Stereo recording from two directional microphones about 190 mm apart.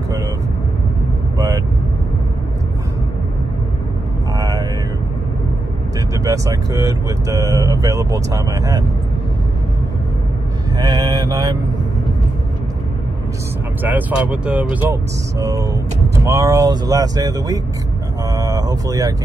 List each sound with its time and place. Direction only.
4.4 s a sound: 15° right (ahead or behind)
6.2 s speech: 15° right (ahead or behind)
10.8 s mantra: 20° right (ahead or behind)
13.8 s speech: 10° right (ahead or behind)
18.3 s vehicle: 15° right (ahead or behind)